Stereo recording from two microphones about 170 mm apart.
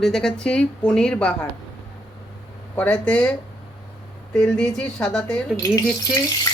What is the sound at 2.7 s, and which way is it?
Speech, 5° left (ahead or behind).